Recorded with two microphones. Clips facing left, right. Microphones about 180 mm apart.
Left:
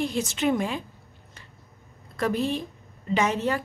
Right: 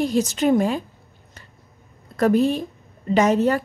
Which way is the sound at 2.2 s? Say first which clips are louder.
Right 8 dB; 45° right (ahead or behind).